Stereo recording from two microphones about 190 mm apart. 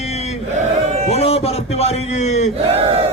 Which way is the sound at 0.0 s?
35° left (ahead or behind).